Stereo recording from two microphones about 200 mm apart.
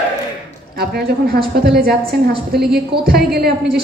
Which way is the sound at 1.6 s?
55° right (ahead or behind).